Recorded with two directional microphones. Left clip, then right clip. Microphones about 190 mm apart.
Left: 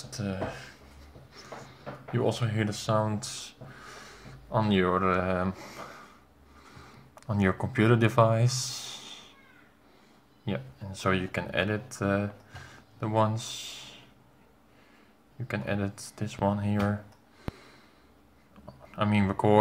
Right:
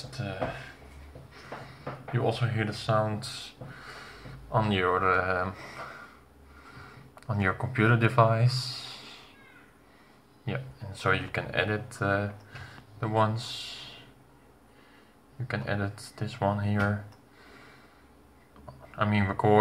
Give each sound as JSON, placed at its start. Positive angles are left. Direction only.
{"t": 0.2, "sound": "speech", "side_deg": 45}
{"t": 2.1, "sound": "speech", "side_deg": 40}
{"t": 4.5, "sound": "speech", "side_deg": 20}
{"t": 7.2, "sound": "speech", "side_deg": 30}
{"t": 10.4, "sound": "speech", "side_deg": 35}
{"t": 15.4, "sound": "speech", "side_deg": 25}
{"t": 18.9, "sound": "speech", "side_deg": 25}